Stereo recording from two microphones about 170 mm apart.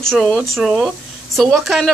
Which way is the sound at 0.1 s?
5° left (ahead or behind).